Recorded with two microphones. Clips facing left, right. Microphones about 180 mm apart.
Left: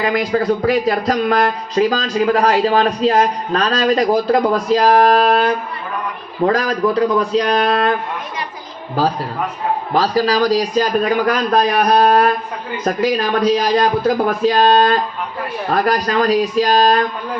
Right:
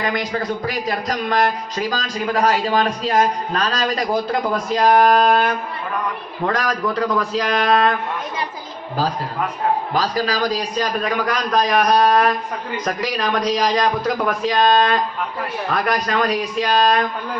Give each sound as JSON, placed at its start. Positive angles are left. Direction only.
{"t": 0.0, "sound": "a man's voice", "side_deg": 35}
{"t": 9.9, "sound": "a man's voice", "side_deg": 40}